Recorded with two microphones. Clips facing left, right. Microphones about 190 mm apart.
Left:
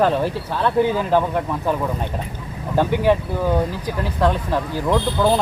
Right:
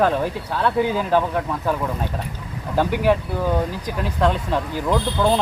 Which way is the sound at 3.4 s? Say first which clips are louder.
Left 2 dB; 5° left (ahead or behind).